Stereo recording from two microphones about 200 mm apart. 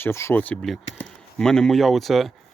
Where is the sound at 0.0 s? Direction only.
15° left (ahead or behind).